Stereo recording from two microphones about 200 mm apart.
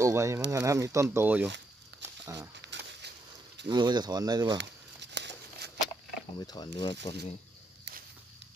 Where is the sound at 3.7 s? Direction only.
20° right (ahead or behind).